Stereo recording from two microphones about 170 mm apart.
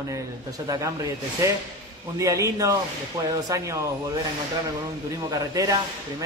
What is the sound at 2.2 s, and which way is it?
A man's voice, 20° right (ahead or behind).